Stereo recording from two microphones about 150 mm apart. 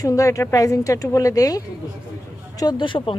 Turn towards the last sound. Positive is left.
turn(degrees=35)  # may be behind; listen again after turning